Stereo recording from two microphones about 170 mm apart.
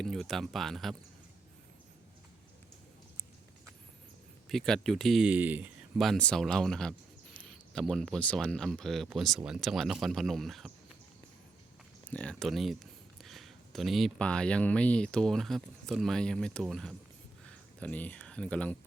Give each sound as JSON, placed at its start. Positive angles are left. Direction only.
{"t": 0.0, "sound": "speech", "side_deg": 0}
{"t": 4.4, "sound": "speech", "side_deg": 0}
{"t": 6.0, "sound": "speech", "side_deg": 5}
{"t": 12.0, "sound": "speech", "side_deg": 5}